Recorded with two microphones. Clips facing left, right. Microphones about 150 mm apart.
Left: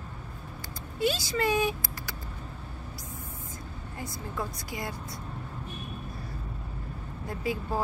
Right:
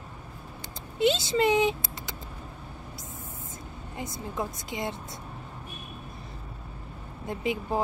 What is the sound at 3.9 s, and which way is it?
A woman's voice, 20° right (ahead or behind).